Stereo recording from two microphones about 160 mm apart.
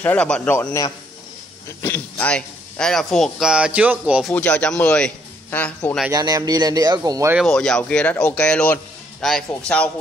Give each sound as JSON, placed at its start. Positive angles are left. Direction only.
{"t": 0.0, "sound": "speech", "side_deg": 10}
{"t": 4.3, "sound": "a man's voice", "side_deg": 5}
{"t": 6.1, "sound": "speech", "side_deg": -20}
{"t": 7.3, "sound": "speech", "side_deg": 5}